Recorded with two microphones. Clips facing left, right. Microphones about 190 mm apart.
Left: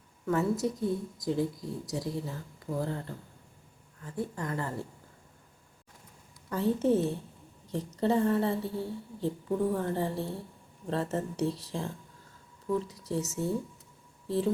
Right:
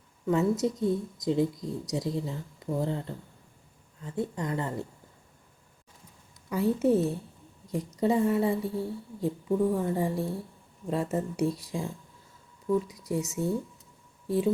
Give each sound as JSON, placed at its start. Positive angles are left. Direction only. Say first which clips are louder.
{"t": 0.3, "sound": "speech", "louder": "right 3 dB", "side_deg": -20}
{"t": 4.0, "sound": "speech", "louder": "right 3 dB", "side_deg": -20}
{"t": 6.5, "sound": "a woman's voice", "louder": "right 2 dB", "side_deg": -10}
{"t": 12.9, "sound": "a woman's voice", "louder": "right 2 dB", "side_deg": -15}